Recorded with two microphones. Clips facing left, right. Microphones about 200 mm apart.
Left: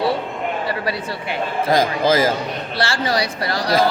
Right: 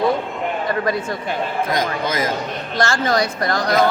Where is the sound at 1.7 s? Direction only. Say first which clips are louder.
Left 9 dB; 30° left (ahead or behind).